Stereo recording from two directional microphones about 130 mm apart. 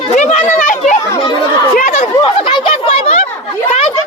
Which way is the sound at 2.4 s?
45° left (ahead or behind).